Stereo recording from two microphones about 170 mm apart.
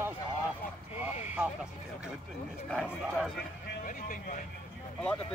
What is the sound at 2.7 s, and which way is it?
Speech, 5° right (ahead or behind).